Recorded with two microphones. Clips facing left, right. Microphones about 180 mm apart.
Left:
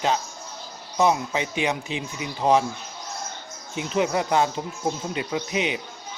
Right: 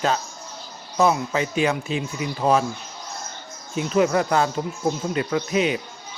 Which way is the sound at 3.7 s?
20° left (ahead or behind).